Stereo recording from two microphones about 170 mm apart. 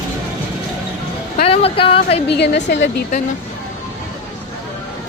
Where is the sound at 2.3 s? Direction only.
85° left.